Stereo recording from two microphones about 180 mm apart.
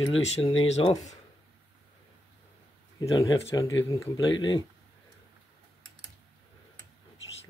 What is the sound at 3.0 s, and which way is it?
Speech, 20° left (ahead or behind).